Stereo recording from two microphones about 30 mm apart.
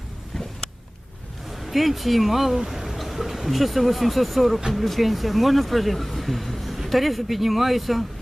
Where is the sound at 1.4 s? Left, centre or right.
Centre.